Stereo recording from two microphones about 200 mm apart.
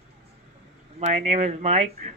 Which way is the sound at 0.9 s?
35° right (ahead or behind).